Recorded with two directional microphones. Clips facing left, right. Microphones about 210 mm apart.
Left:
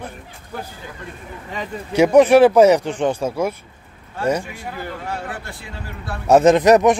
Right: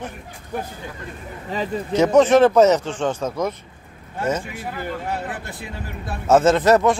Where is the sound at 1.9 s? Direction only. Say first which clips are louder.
Left 3 dB; 10° left (ahead or behind).